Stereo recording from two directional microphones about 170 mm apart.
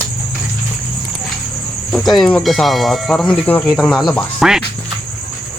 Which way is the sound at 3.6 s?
Centre (ahead or behind).